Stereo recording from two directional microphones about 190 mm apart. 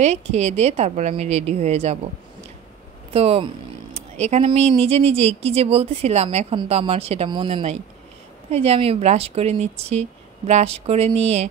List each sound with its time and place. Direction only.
0.0 s speech: 35° right (ahead or behind)
3.1 s speech: 30° right (ahead or behind)